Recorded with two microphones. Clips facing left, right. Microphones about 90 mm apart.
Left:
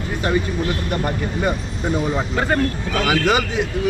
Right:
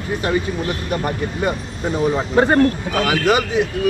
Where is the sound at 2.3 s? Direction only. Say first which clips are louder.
Right 7 dB; 35° right (ahead or behind).